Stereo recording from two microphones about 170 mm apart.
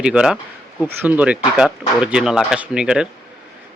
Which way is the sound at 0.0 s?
5° right (ahead or behind).